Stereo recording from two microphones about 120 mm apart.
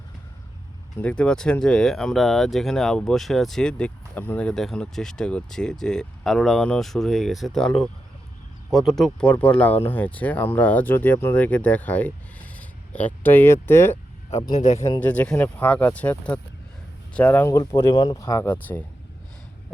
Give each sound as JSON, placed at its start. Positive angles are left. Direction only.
{"t": 1.0, "sound": "speech", "side_deg": 10}
{"t": 14.5, "sound": "speech", "side_deg": 80}
{"t": 15.0, "sound": "speech", "side_deg": 10}
{"t": 18.0, "sound": "speech", "side_deg": 35}
{"t": 18.4, "sound": "speech", "side_deg": 15}